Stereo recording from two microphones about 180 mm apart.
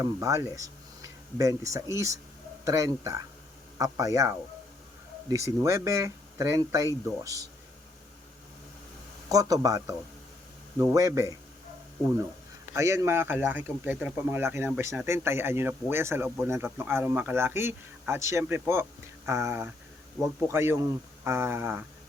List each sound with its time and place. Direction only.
0.0 s a man's voice: 20° right (ahead or behind)
9.3 s a man's voice: 20° right (ahead or behind)
12.7 s speech: 15° right (ahead or behind)